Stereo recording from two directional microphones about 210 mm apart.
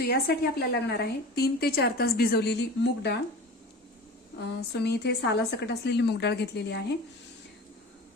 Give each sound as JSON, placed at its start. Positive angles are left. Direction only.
{"t": 0.0, "sound": "a woman's voice", "side_deg": 50}
{"t": 4.4, "sound": "a woman's voice", "side_deg": 50}